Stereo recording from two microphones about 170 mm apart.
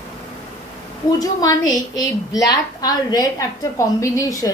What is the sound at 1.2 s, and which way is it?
A woman's voice, 20° left (ahead or behind).